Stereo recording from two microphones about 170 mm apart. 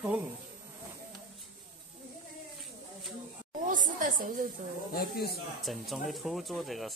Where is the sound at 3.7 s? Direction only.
50° right (ahead or behind).